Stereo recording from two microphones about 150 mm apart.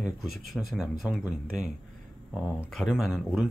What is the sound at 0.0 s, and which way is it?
Speech, centre (ahead or behind).